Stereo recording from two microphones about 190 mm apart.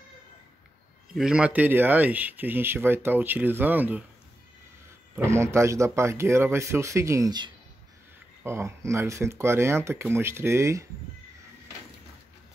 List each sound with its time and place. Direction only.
1.1 s speech: 5° right (ahead or behind)
5.1 s speech: 15° right (ahead or behind)